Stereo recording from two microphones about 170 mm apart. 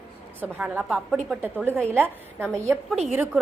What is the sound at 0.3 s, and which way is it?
A woman's voice, 10° right (ahead or behind).